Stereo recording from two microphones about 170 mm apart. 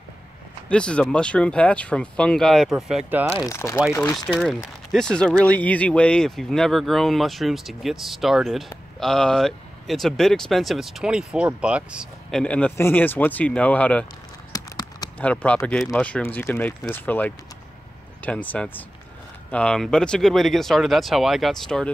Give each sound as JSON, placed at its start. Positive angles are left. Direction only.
{"t": 0.7, "sound": "speech", "side_deg": 5}
{"t": 3.4, "sound": "speech", "side_deg": 20}
{"t": 4.3, "sound": "speech", "side_deg": -5}
{"t": 14.5, "sound": "clip-clop", "side_deg": 20}
{"t": 15.1, "sound": "speech", "side_deg": 10}